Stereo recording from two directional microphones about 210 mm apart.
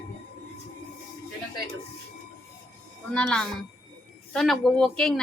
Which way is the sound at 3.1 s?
5° left (ahead or behind).